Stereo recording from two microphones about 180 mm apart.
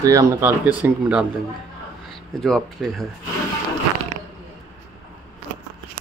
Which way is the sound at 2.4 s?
Centre (ahead or behind).